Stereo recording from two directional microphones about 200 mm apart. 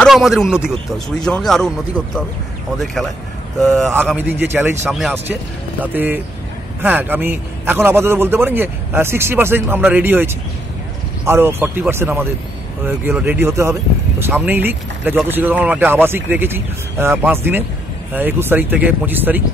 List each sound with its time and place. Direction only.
0.0 s speech: centre (ahead or behind)
2.8 s speech: centre (ahead or behind)
4.2 s a man's voice: 10° right (ahead or behind)